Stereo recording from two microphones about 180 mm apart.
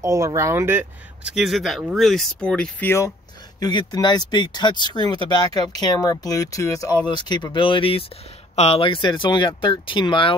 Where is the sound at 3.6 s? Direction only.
25° left (ahead or behind).